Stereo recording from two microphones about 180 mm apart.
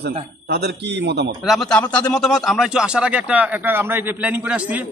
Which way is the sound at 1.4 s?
Centre (ahead or behind).